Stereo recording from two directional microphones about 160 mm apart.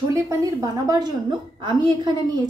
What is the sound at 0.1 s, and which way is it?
A woman's voice, 20° right (ahead or behind).